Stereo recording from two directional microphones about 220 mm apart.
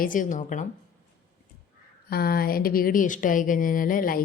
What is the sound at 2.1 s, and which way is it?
Speech, 45° left (ahead or behind).